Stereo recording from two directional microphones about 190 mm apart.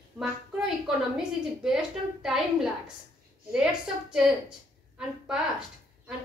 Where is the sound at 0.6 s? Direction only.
5° right (ahead or behind).